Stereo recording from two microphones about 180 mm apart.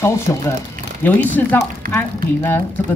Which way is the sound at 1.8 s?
55° right (ahead or behind).